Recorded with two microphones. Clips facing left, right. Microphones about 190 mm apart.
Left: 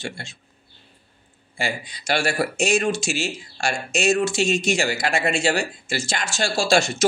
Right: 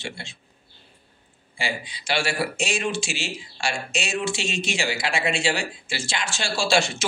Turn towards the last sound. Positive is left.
turn(degrees=45)  # may be behind; listen again after turning